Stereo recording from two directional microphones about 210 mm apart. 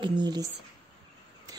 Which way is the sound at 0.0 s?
20° right (ahead or behind).